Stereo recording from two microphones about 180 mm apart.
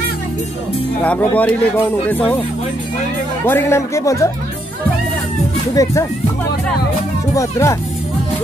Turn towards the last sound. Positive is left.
turn(degrees=15)  # may be behind; listen again after turning